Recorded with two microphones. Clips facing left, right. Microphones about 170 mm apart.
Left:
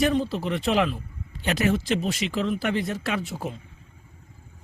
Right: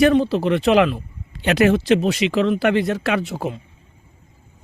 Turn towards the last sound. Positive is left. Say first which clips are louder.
# right 7 dB
turn(degrees=-75)  # may be behind; listen again after turning